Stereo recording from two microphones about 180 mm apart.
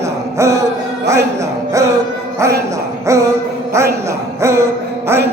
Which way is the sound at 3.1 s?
15° right (ahead or behind).